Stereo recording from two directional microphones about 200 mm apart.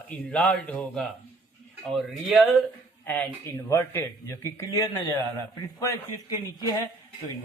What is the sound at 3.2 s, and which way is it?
Speech, 15° left (ahead or behind).